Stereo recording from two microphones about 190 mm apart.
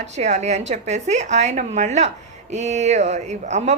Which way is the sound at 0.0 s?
35° right (ahead or behind).